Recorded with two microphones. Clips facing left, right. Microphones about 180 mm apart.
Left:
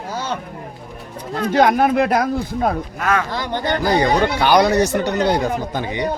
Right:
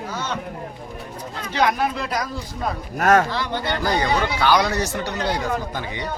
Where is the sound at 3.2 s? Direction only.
45° left (ahead or behind).